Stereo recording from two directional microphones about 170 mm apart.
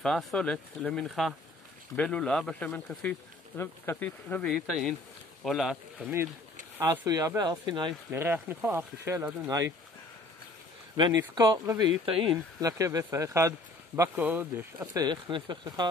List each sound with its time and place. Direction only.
0.0 s speech: 5° left (ahead or behind)
6.8 s speech: 20° right (ahead or behind)
8.1 s speech: 15° right (ahead or behind)
11.0 s speech: 25° right (ahead or behind)
15.0 s speech: 25° right (ahead or behind)